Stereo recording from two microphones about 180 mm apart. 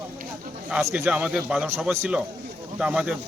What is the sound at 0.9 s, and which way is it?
A man's voice, 5° right (ahead or behind).